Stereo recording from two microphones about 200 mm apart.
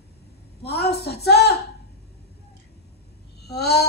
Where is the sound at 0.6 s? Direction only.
55° left (ahead or behind).